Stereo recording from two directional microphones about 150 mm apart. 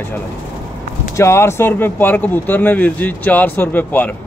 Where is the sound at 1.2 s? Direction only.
20° left (ahead or behind).